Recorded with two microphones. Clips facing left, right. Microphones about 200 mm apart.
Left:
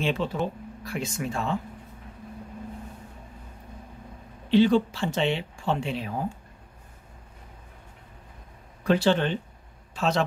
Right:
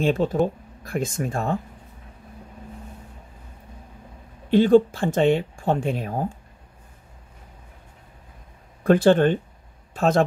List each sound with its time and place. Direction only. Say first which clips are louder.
0.0 s speech: right 6 dB; 45° right (ahead or behind)
4.5 s speech: right 4 dB; 50° right (ahead or behind)
8.8 s speech: right 6 dB; 50° right (ahead or behind)